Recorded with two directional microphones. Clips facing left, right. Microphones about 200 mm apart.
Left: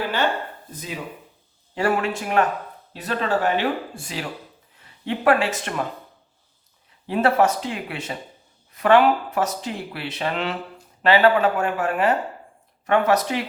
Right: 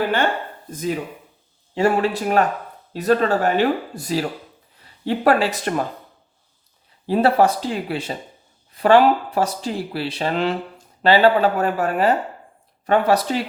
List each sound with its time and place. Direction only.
0.7 s speech: 45° right (ahead or behind)
1.7 s a man's voice: 25° right (ahead or behind)
2.1 s speech: 40° right (ahead or behind)
7.1 s speech: 35° right (ahead or behind)